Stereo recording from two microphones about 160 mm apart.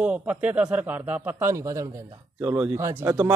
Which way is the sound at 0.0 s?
10° right (ahead or behind).